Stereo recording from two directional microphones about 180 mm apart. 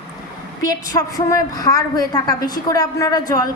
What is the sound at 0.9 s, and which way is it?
A woman's voice, 20° left (ahead or behind).